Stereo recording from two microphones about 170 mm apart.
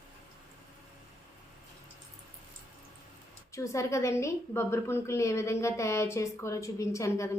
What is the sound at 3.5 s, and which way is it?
A woman's voice, 15° left (ahead or behind).